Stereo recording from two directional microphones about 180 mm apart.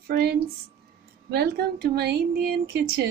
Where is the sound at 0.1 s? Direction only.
65° right (ahead or behind).